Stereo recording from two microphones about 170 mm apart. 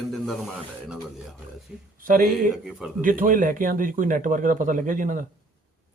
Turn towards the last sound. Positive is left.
turn(degrees=-55)  # may be behind; listen again after turning